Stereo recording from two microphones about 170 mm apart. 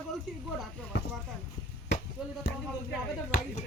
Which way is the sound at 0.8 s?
10° left (ahead or behind).